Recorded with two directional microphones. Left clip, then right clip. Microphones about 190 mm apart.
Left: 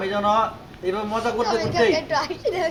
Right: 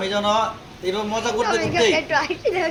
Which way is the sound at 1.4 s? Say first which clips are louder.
Right 1 dB; 35° right (ahead or behind).